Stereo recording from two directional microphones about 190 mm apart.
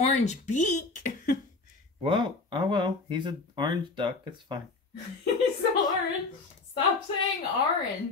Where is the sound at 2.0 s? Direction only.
25° right (ahead or behind).